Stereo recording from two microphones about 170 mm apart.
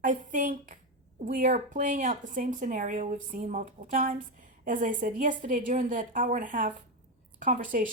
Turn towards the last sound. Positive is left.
turn(degrees=-55)  # may be behind; listen again after turning